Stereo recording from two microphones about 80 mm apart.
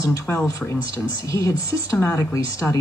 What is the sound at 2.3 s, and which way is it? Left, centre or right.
Speech, left.